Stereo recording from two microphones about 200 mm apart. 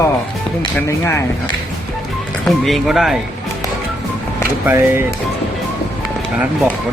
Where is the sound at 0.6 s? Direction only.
15° left (ahead or behind).